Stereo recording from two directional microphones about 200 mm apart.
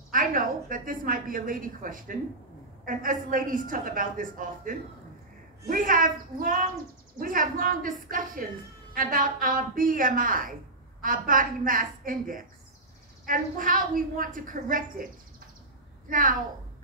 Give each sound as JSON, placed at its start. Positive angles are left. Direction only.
{"t": 0.1, "sound": "a woman's voice", "side_deg": -45}
{"t": 16.1, "sound": "a woman's voice", "side_deg": -45}